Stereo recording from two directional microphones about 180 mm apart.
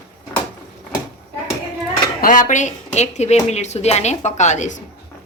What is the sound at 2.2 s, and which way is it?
Speech, 45° left (ahead or behind).